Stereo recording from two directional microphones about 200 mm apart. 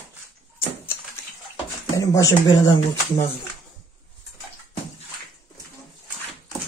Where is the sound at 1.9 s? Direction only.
15° left (ahead or behind).